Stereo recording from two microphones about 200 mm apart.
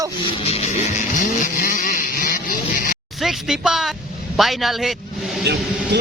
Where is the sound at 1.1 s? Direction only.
40° left (ahead or behind).